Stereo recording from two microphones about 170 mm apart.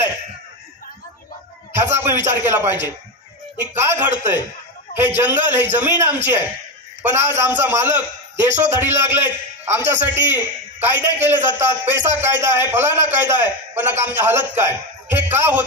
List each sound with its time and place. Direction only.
1.8 s a man's voice: 15° right (ahead or behind)